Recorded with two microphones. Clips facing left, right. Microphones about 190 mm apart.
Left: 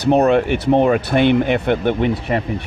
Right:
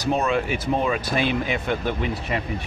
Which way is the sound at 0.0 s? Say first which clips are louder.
Left 9 dB; 65° left (ahead or behind).